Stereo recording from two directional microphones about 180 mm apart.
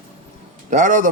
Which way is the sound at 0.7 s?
45° right (ahead or behind).